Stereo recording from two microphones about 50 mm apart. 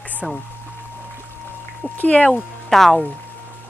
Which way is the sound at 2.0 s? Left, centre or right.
Left.